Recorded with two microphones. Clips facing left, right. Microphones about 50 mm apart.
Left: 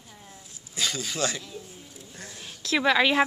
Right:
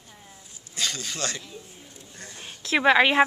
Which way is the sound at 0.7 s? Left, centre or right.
Centre.